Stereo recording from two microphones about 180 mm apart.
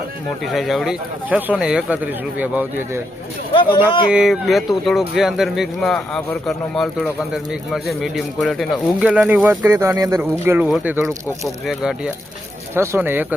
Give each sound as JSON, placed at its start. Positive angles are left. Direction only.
{"t": 0.4, "sound": "speech", "side_deg": 0}
{"t": 3.5, "sound": "speech", "side_deg": 25}
{"t": 4.1, "sound": "speech", "side_deg": 0}
{"t": 12.7, "sound": "speech", "side_deg": -15}